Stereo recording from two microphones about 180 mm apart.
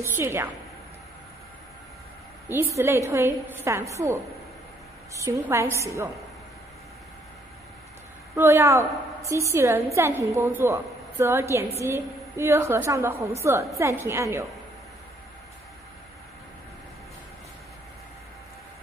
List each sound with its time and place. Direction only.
0.0 s a woman's voice: 15° right (ahead or behind)
2.4 s a woman's voice: 15° right (ahead or behind)
5.2 s a woman's voice: 15° right (ahead or behind)
8.4 s a woman's voice: 15° right (ahead or behind)